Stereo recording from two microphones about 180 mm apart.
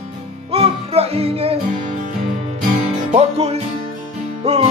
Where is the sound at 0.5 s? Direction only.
35° right (ahead or behind).